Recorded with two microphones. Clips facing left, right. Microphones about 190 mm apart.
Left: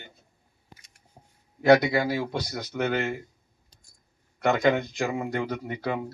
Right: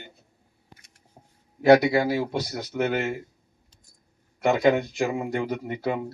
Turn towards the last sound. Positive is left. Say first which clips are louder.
# right 2 dB
turn(degrees=-5)  # may be behind; listen again after turning